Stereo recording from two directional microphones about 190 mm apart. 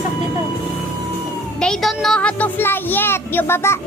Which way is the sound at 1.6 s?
Centre (ahead or behind).